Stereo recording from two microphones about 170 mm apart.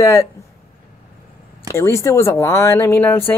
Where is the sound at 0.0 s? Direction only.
20° left (ahead or behind).